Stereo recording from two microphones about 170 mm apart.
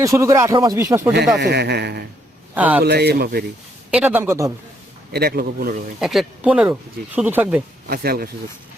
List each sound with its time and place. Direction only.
0.0 s speech: 15° right (ahead or behind)
1.1 s a man's voice: 75° right (ahead or behind)
2.6 s speech: 10° right (ahead or behind)
2.8 s a man's voice: 70° right (ahead or behind)
3.9 s speech: 10° right (ahead or behind)
5.1 s a man's voice: 65° right (ahead or behind)
6.0 s speech: centre (ahead or behind)
7.9 s a man's voice: 65° right (ahead or behind)